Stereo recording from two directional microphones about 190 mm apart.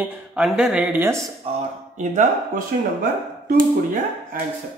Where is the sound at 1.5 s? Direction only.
30° right (ahead or behind).